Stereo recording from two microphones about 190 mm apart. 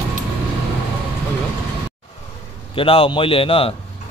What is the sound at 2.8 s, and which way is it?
Speech, 30° left (ahead or behind).